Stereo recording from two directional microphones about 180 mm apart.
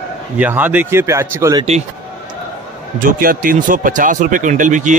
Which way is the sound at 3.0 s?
50° right (ahead or behind).